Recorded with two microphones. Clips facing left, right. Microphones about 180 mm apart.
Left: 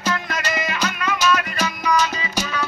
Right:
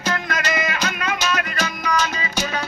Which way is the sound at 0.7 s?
45° right (ahead or behind).